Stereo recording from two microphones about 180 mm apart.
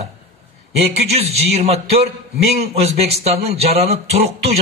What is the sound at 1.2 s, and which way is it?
Speech, 35° right (ahead or behind).